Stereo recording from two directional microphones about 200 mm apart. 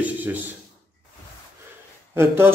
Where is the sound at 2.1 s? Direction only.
10° right (ahead or behind).